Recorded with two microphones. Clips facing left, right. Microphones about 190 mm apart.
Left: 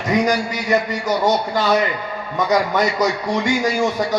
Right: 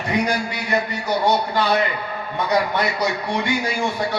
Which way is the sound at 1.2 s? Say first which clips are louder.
Even; 45° left (ahead or behind).